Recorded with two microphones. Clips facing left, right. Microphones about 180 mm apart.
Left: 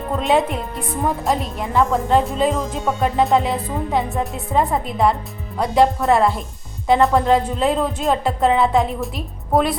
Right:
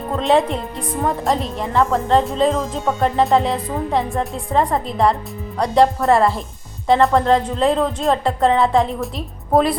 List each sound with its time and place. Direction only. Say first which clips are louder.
0.2 s speech: right 2 dB; 5° left (ahead or behind)